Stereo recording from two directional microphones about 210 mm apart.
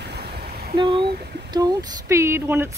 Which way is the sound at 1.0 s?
50° right (ahead or behind).